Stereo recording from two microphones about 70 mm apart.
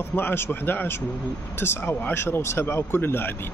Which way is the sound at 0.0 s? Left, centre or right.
Left.